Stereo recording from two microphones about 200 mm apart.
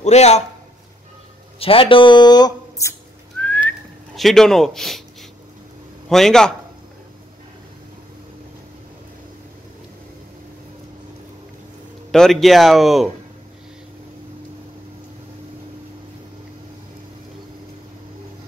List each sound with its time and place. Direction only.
0.0 s a man's voice: 35° left (ahead or behind)
1.6 s speech: 25° left (ahead or behind)
3.3 s whistling: 5° left (ahead or behind)
4.1 s speech: centre (ahead or behind)
6.0 s speech: centre (ahead or behind)
12.1 s speech: centre (ahead or behind)